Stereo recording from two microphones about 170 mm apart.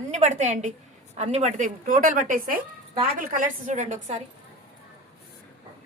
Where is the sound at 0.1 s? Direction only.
45° right (ahead or behind).